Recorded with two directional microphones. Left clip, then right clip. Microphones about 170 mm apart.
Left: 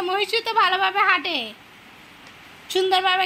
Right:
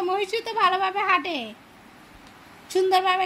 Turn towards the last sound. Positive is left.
turn(degrees=-10)  # may be behind; listen again after turning